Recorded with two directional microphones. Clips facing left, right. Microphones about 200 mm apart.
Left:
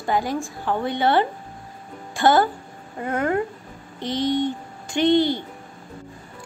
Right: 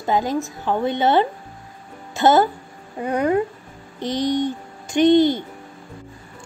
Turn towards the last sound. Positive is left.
turn(degrees=-20)  # may be behind; listen again after turning